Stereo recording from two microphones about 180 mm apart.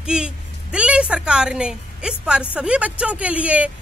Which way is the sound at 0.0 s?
5° right (ahead or behind).